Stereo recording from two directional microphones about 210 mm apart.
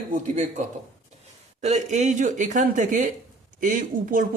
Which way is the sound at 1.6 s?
35° right (ahead or behind).